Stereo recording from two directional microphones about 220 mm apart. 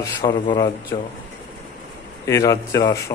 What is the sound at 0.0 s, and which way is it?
Speech, 20° left (ahead or behind).